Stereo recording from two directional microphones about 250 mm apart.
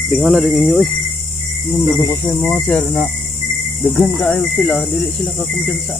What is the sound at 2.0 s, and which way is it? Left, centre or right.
Cricket, centre.